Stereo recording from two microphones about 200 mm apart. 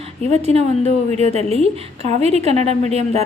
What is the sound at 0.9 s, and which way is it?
A woman's voice, 35° right (ahead or behind).